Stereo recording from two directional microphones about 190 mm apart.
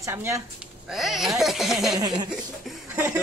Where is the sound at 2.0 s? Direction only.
20° right (ahead or behind).